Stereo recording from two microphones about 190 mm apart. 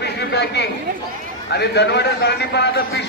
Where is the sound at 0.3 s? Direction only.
65° left (ahead or behind).